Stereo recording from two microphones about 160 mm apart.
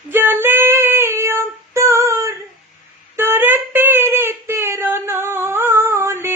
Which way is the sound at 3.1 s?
15° right (ahead or behind).